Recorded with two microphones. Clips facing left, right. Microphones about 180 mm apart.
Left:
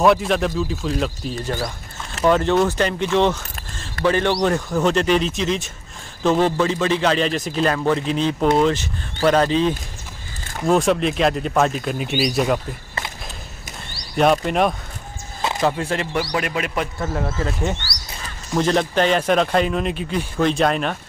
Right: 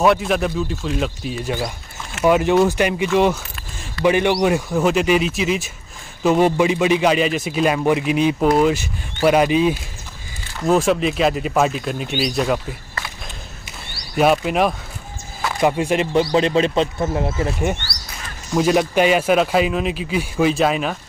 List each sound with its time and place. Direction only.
0.0 s a man's voice: centre (ahead or behind)
14.1 s speech: 5° right (ahead or behind)
15.6 s a man's voice: 15° right (ahead or behind)